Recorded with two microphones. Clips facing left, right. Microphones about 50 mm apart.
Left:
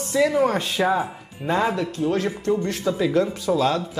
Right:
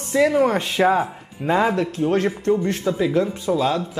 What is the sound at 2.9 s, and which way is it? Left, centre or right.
Speech, right.